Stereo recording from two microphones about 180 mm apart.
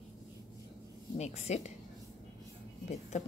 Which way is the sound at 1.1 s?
35° left (ahead or behind).